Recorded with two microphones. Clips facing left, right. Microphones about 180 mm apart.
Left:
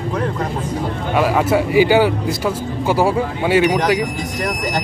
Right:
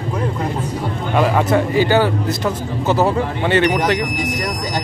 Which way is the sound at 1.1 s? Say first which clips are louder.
Even; 5° left (ahead or behind).